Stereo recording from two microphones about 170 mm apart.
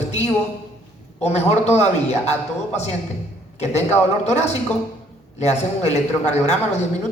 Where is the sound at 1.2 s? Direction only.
40° left (ahead or behind).